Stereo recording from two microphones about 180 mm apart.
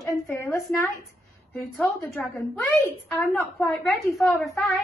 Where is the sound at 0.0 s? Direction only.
15° left (ahead or behind).